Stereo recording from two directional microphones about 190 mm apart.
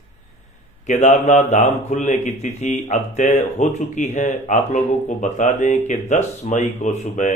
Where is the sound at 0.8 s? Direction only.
40° left (ahead or behind).